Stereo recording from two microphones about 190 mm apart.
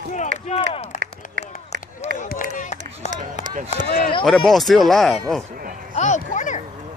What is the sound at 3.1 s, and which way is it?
Run, 40° right (ahead or behind).